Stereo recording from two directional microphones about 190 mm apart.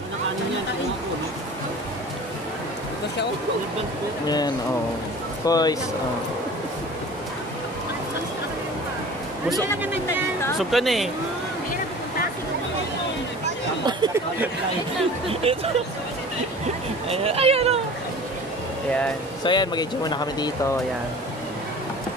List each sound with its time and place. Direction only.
5.4 s speech: 20° left (ahead or behind)
10.6 s speech: centre (ahead or behind)
13.8 s speech: 20° right (ahead or behind)
15.2 s speech: 30° right (ahead or behind)
17.1 s speech: 30° right (ahead or behind)
19.4 s speech: 25° left (ahead or behind)